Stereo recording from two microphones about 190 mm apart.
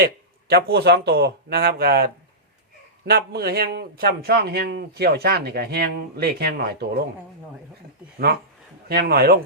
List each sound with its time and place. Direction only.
0.0 s a man's voice: 55° right (ahead or behind)
3.1 s a man's voice: 55° right (ahead or behind)
8.9 s a man's voice: 55° right (ahead or behind)